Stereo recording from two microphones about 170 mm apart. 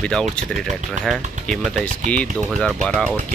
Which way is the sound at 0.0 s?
5° left (ahead or behind).